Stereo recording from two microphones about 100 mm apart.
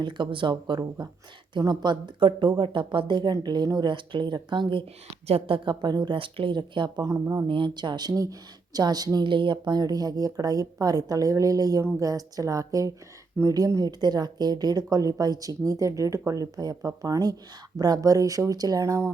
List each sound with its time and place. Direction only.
0.0 s speech: 55° right (ahead or behind); by 7.4 s 35° right (ahead or behind)
7.4 s speech: 55° right (ahead or behind); by 19.1 s 30° right (ahead or behind)